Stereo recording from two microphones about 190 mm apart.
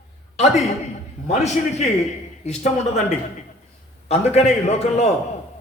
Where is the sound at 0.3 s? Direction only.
35° left (ahead or behind).